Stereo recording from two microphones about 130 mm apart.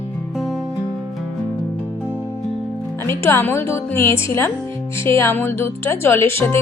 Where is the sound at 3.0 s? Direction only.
20° left (ahead or behind).